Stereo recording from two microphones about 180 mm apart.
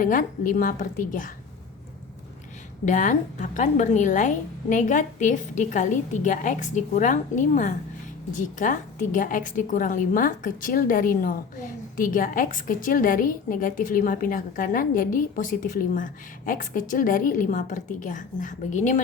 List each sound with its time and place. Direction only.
0.0 s a woman's voice: 45° left (ahead or behind)
2.8 s a woman's voice: 45° left (ahead or behind)